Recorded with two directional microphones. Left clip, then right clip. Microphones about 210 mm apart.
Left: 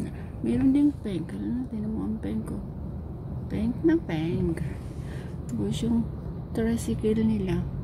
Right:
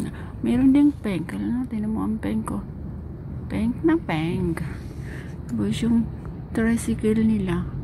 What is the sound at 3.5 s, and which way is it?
A woman's voice, 20° right (ahead or behind).